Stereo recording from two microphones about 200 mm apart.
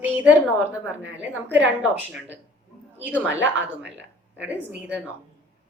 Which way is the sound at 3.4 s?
65° right (ahead or behind).